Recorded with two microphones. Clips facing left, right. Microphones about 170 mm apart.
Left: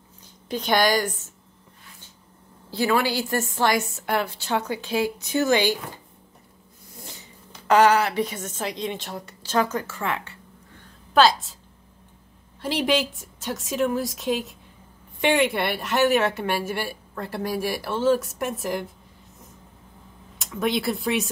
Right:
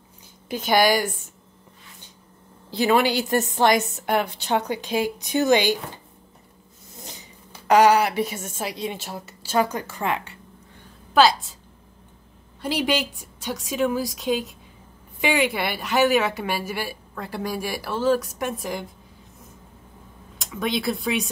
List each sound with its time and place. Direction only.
0.5 s a woman's voice: 5° right (ahead or behind)
2.7 s a woman's voice: 20° right (ahead or behind)
7.0 s speech: 20° right (ahead or behind)
12.6 s a woman's voice: centre (ahead or behind)
20.3 s speech: centre (ahead or behind)